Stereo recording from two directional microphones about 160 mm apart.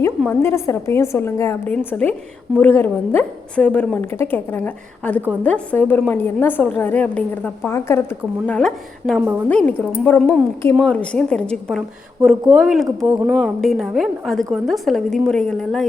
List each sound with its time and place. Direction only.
0.3 s a woman's voice: 15° left (ahead or behind)
8.4 s a woman's voice: 5° left (ahead or behind)